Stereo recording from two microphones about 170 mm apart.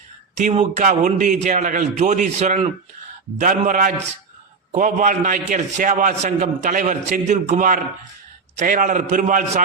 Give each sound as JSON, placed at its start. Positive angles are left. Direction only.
{"t": 0.3, "sound": "a man's voice", "side_deg": -45}